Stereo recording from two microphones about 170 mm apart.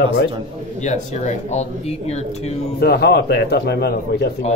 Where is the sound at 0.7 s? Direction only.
45° left (ahead or behind).